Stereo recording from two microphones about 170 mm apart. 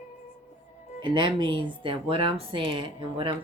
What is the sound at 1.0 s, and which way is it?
Speech, 30° right (ahead or behind).